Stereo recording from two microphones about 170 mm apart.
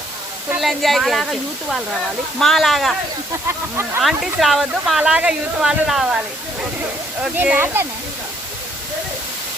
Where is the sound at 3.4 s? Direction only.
15° right (ahead or behind).